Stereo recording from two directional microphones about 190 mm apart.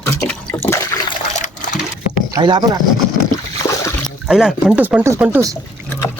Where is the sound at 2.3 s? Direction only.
25° right (ahead or behind).